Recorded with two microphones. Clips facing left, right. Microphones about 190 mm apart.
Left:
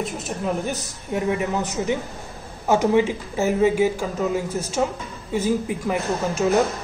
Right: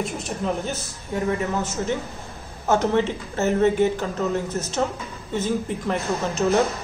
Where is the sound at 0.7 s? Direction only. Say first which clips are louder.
Left 2 dB; 15° left (ahead or behind).